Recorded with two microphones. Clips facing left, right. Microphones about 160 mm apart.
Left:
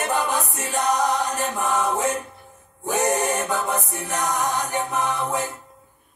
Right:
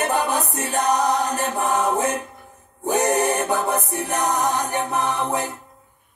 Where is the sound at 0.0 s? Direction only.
40° right (ahead or behind).